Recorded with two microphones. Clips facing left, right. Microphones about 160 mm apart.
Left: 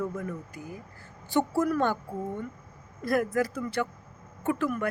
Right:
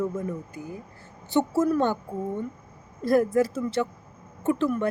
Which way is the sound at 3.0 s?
30° right (ahead or behind).